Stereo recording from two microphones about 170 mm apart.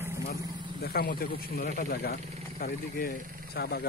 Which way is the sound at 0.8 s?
65° left (ahead or behind).